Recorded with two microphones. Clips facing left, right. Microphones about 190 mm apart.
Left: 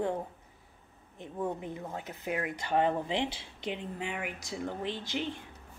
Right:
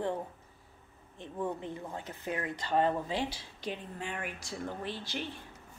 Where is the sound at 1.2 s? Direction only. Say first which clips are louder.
Left 1 dB; 15° left (ahead or behind).